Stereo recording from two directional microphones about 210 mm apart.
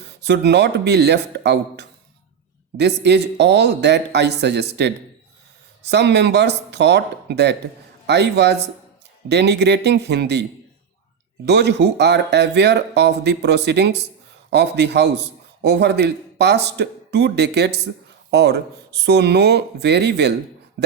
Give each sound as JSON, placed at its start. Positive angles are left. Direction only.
{"t": 0.0, "sound": "a man's voice", "side_deg": -55}
{"t": 11.4, "sound": "a man's voice", "side_deg": -55}
{"t": 20.8, "sound": "a sound", "side_deg": -40}